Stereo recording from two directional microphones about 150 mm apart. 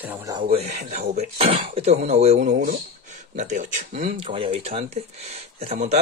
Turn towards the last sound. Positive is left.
turn(degrees=-45)  # may be behind; listen again after turning